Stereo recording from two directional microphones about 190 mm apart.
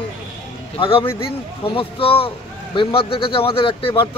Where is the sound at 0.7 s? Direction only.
30° left (ahead or behind).